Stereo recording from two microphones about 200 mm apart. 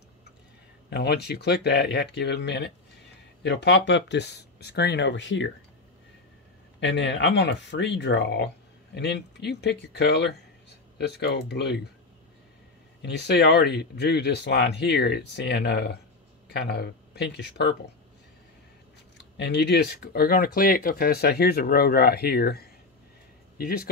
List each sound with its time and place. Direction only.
0.8 s speech: 55° left (ahead or behind)
6.8 s speech: 60° left (ahead or behind)
13.0 s speech: 55° left (ahead or behind)
19.1 s speech: 60° left (ahead or behind)